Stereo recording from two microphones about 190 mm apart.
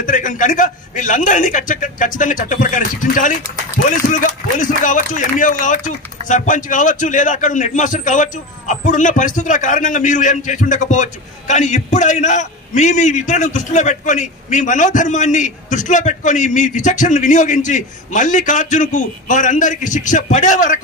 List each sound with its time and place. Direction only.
0.0 s a man's voice: 45° left (ahead or behind)